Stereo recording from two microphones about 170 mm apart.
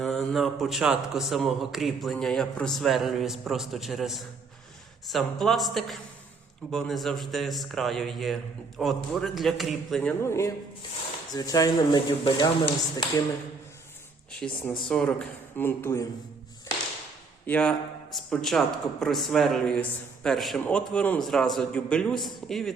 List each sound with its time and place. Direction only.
0.0 s speech: centre (ahead or behind); by 12.7 s 30° left (ahead or behind)
14.3 s speech: 5° left (ahead or behind)
17.4 s speech: 10° left (ahead or behind)